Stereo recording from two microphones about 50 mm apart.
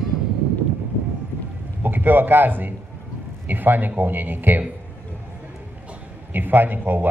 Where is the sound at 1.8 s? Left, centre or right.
Right.